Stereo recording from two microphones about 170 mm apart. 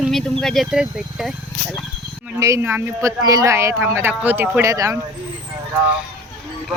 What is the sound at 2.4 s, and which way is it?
Speech, 15° right (ahead or behind).